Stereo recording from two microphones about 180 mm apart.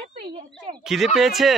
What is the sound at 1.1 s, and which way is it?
Speech, centre (ahead or behind).